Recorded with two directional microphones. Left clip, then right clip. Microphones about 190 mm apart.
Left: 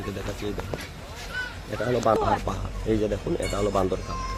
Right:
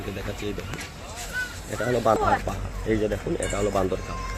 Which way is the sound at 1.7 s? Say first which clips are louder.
Right 1 dB; centre (ahead or behind).